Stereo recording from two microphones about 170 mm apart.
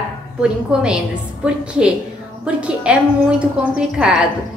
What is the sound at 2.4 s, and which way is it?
Speech, 5° right (ahead or behind).